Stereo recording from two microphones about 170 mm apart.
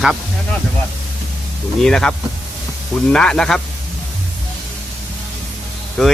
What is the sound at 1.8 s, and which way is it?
Speech, 5° left (ahead or behind).